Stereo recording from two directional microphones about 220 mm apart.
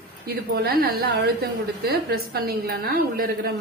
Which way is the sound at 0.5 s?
45° right (ahead or behind).